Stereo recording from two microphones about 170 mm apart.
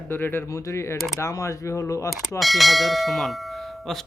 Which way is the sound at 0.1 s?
15° left (ahead or behind).